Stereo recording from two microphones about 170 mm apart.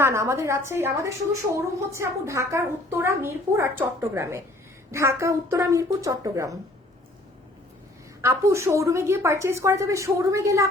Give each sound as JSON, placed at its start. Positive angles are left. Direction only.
{"t": 0.0, "sound": "a woman's voice", "side_deg": -15}
{"t": 8.2, "sound": "a woman's voice", "side_deg": -15}